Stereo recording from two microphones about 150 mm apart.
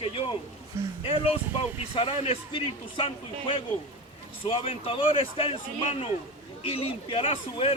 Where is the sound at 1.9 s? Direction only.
35° left (ahead or behind).